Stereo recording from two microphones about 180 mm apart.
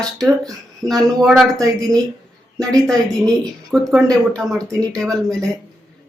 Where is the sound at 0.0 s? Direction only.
20° right (ahead or behind).